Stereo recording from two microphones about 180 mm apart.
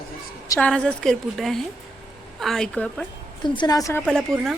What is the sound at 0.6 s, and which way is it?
A woman's voice, 5° left (ahead or behind).